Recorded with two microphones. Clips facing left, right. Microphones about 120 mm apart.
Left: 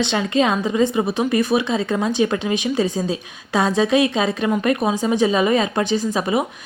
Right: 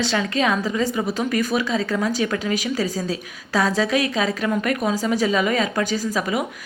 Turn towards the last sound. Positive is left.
turn(degrees=25)  # may be behind; listen again after turning